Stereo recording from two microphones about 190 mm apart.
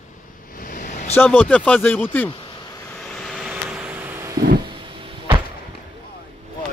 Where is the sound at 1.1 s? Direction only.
10° left (ahead or behind).